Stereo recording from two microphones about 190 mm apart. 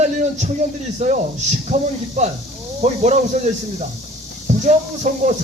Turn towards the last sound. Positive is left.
turn(degrees=-40)  # may be behind; listen again after turning